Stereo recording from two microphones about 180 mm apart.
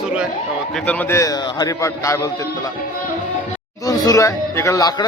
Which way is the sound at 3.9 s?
20° left (ahead or behind).